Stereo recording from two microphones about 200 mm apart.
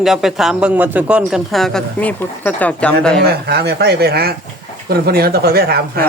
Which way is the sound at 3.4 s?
55° right (ahead or behind).